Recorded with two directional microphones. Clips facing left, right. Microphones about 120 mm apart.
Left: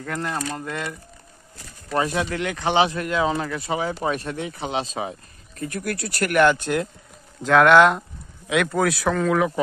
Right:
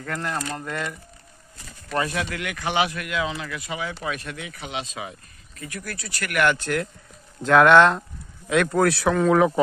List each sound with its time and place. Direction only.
0.0 s speech: 20° left (ahead or behind)
2.0 s speech: 25° left (ahead or behind); by 6.3 s 40° left (ahead or behind)
6.3 s speech: 20° left (ahead or behind)
7.4 s speech: centre (ahead or behind)